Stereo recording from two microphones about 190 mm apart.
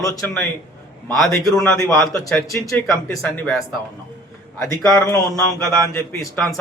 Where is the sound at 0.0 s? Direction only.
15° left (ahead or behind).